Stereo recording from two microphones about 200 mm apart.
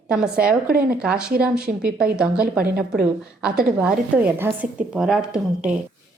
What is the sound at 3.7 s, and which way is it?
A woman's voice, 5° right (ahead or behind).